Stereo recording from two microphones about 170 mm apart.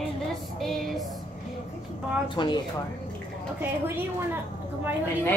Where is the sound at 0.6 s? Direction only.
Centre (ahead or behind).